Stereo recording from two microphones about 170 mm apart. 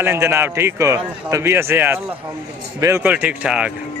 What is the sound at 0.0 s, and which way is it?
A man's voice, 15° right (ahead or behind).